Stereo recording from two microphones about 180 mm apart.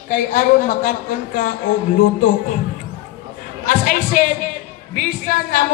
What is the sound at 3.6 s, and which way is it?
A man's voice, 45° left (ahead or behind).